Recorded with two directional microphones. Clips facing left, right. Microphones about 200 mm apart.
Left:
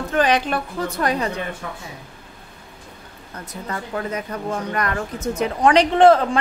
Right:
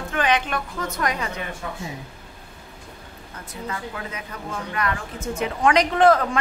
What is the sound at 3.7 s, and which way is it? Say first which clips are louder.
Speech: left 8 dB; 40° left (ahead or behind).